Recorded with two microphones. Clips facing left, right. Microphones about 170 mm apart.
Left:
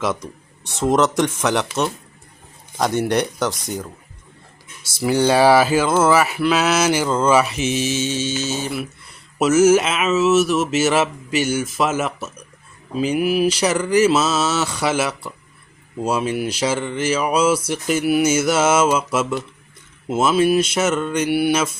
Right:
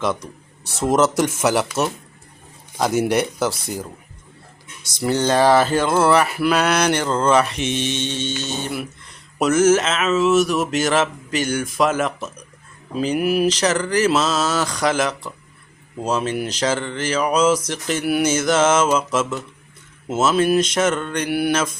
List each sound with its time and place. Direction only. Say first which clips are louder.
0.6 s speech: even; centre (ahead or behind)
2.7 s speech: even; 5° right (ahead or behind)
4.9 s speech: left 2 dB; 10° left (ahead or behind)